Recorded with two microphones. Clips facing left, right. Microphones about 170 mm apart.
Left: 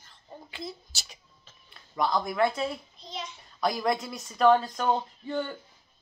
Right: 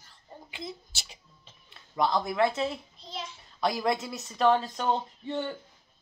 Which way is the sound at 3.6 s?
25° right (ahead or behind).